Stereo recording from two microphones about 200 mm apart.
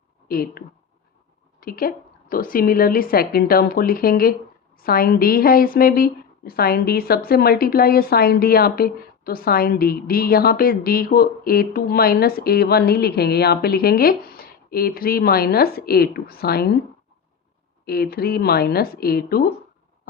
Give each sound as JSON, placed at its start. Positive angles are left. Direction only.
{"t": 0.3, "sound": "a woman's voice", "side_deg": 50}
{"t": 1.6, "sound": "a woman's voice", "side_deg": 45}
{"t": 17.8, "sound": "a woman's voice", "side_deg": 50}